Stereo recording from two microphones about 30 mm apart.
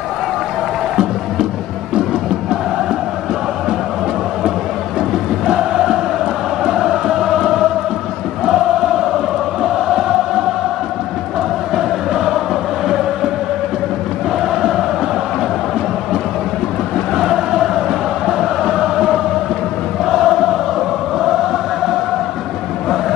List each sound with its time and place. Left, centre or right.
5.5 s choir: right
6.6 s chant: centre
9.6 s chant: centre
11.7 s choir: centre
12.8 s chant: centre
14.4 s chant: centre
17.1 s choir: centre
20.1 s chant: centre